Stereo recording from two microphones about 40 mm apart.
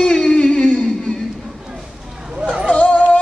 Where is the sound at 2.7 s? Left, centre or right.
Left.